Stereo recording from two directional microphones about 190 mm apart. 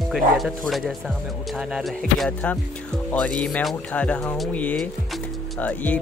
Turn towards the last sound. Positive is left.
turn(degrees=10)  # may be behind; listen again after turning